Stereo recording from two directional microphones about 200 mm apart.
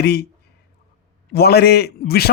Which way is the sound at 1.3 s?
50° left (ahead or behind).